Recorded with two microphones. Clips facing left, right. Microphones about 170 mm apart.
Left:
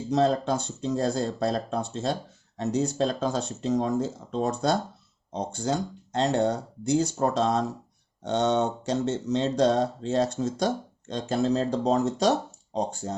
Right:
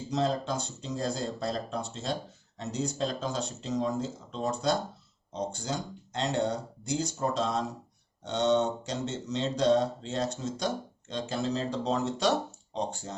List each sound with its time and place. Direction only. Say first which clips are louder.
0.1 s speech: left 6 dB; 55° left (ahead or behind)